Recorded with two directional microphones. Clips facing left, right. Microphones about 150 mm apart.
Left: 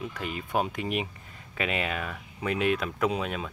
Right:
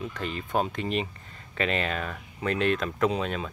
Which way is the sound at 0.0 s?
10° left (ahead or behind).